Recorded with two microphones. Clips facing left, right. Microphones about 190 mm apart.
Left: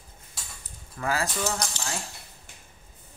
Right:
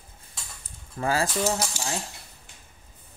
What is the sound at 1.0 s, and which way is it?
Speech, 30° right (ahead or behind).